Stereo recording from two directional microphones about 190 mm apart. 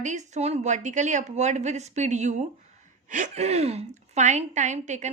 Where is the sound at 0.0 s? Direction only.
40° right (ahead or behind).